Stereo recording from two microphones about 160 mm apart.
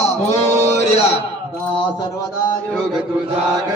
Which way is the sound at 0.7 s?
45° left (ahead or behind).